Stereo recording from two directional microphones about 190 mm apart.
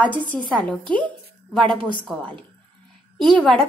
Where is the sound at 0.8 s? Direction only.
25° right (ahead or behind).